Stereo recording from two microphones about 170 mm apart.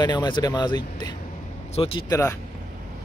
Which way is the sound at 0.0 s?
25° left (ahead or behind).